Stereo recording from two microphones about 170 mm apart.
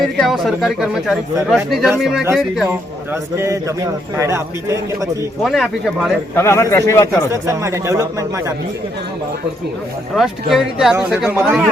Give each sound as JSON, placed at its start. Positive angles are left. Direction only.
{"t": 0.0, "sound": "speech", "side_deg": 0}
{"t": 3.3, "sound": "speech", "side_deg": -15}
{"t": 5.4, "sound": "speech", "side_deg": 0}
{"t": 6.3, "sound": "a man's voice", "side_deg": 15}
{"t": 7.3, "sound": "speech", "side_deg": -15}
{"t": 10.2, "sound": "speech", "side_deg": 0}
{"t": 11.4, "sound": "speech", "side_deg": 0}